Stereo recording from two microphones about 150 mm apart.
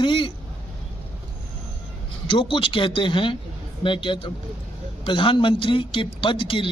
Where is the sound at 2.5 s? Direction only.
35° left (ahead or behind).